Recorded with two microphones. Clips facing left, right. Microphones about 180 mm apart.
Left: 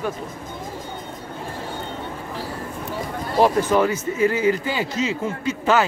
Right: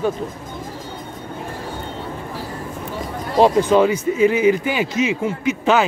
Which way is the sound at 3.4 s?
15° right (ahead or behind).